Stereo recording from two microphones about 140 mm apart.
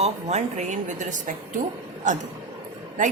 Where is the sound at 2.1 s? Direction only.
65° right (ahead or behind).